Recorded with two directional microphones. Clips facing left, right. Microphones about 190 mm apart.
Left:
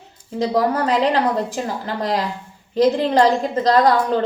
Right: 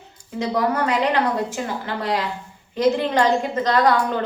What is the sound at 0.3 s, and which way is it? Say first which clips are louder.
A woman's voice: left 3 dB; 35° left (ahead or behind).